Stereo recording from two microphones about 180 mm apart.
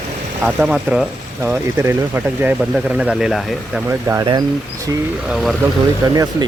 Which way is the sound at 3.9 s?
15° right (ahead or behind).